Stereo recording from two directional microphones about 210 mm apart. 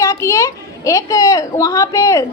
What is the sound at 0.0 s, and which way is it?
A woman's voice, 15° left (ahead or behind).